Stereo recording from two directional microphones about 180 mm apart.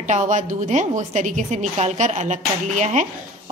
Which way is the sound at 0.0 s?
45° right (ahead or behind).